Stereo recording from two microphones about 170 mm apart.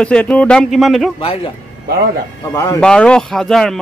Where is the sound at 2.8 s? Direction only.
5° left (ahead or behind).